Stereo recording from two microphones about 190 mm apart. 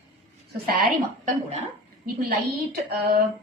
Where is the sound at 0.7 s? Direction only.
45° right (ahead or behind).